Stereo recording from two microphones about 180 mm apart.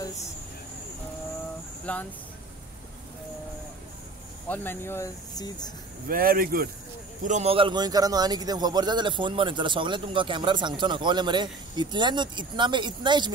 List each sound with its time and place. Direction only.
1.9 s speech: 5° left (ahead or behind)
4.5 s speech: 10° left (ahead or behind)
6.0 s speech: 55° right (ahead or behind)
7.2 s a man's voice: 35° right (ahead or behind)